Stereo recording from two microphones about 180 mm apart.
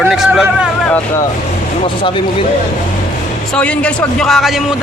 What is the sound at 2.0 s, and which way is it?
Speech, 30° left (ahead or behind).